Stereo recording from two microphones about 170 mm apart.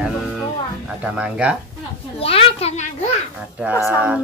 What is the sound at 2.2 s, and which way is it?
Speech, 35° left (ahead or behind).